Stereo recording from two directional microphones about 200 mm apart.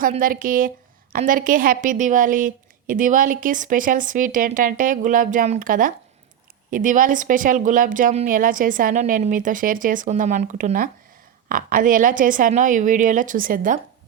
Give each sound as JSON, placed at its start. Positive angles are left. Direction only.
{"t": 0.0, "sound": "a woman's voice", "side_deg": -45}